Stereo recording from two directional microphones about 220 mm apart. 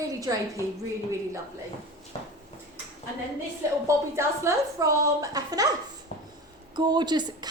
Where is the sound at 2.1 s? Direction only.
25° left (ahead or behind).